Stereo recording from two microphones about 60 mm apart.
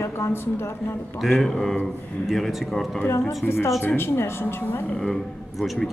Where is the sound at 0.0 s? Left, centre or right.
Left.